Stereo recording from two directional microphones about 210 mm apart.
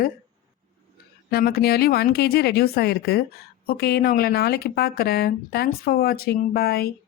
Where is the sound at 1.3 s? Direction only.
45° left (ahead or behind).